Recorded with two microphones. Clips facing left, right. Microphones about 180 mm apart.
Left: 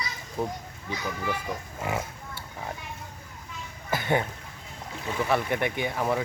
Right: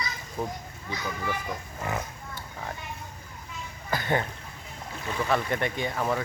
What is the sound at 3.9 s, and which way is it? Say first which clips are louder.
Speech: left 1 dB; 15° left (ahead or behind).